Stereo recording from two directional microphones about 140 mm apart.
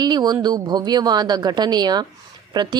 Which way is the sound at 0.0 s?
30° right (ahead or behind).